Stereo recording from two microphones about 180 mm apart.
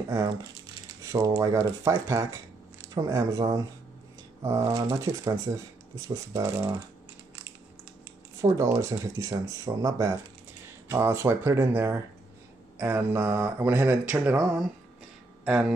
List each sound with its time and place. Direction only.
1.0 s mantra: 15° right (ahead or behind)
2.9 s speech: 20° right (ahead or behind)
4.4 s mantra: 15° right (ahead or behind)
4.8 s speech: 20° right (ahead or behind)
6.0 s mantra: 15° right (ahead or behind)
8.4 s mantra: 15° right (ahead or behind)
15.4 s speech: 5° right (ahead or behind)